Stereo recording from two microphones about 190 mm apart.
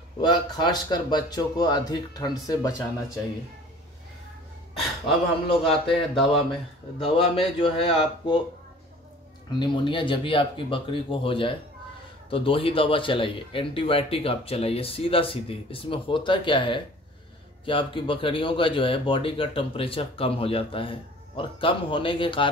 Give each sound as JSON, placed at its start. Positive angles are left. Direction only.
{"t": 0.2, "sound": "speech", "side_deg": 20}
{"t": 5.0, "sound": "speech", "side_deg": 30}
{"t": 5.7, "sound": "a man's voice", "side_deg": 0}
{"t": 7.0, "sound": "speech", "side_deg": 30}
{"t": 9.5, "sound": "speech", "side_deg": 25}